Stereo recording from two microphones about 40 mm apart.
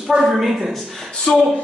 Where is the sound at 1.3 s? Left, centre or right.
Left.